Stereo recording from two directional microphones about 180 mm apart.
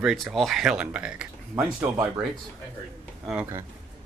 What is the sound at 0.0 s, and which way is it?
Speech, centre (ahead or behind).